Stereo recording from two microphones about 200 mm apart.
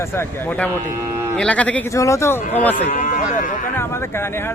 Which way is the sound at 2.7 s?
40° left (ahead or behind).